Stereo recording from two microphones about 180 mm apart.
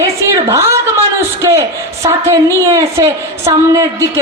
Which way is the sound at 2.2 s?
15° right (ahead or behind).